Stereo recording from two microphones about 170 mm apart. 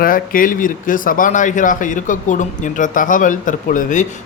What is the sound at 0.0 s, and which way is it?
Speech, 55° left (ahead or behind).